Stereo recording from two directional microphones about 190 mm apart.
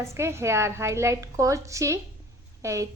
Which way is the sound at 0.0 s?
15° right (ahead or behind).